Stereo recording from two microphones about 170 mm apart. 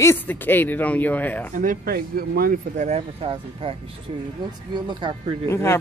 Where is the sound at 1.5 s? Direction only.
50° right (ahead or behind).